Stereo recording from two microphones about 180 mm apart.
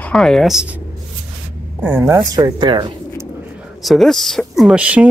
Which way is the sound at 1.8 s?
10° right (ahead or behind).